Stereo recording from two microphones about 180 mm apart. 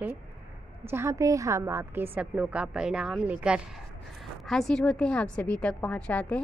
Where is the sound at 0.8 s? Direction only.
15° right (ahead or behind).